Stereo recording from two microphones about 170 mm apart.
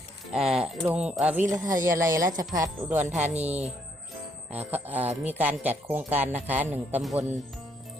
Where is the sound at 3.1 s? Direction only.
40° right (ahead or behind).